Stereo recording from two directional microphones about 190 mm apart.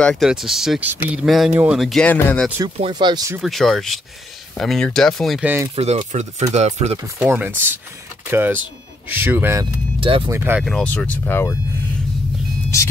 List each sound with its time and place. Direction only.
0.0 s speech: centre (ahead or behind)
2.8 s speech: 25° right (ahead or behind)
3.3 s speech: centre (ahead or behind)
5.8 s speech: 35° right (ahead or behind)
7.2 s speech: 10° right (ahead or behind)
9.9 s speech: 25° right (ahead or behind)
10.3 s speech: 10° right (ahead or behind)
10.6 s speech: 5° left (ahead or behind)